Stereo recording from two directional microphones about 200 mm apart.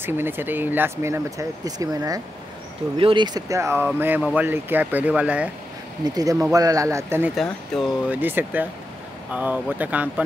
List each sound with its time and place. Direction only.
0.0 s speech: 10° right (ahead or behind)
6.0 s speech: 20° right (ahead or behind)
7.3 s speech: centre (ahead or behind)